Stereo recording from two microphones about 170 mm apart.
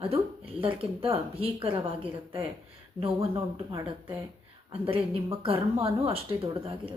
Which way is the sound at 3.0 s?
30° right (ahead or behind).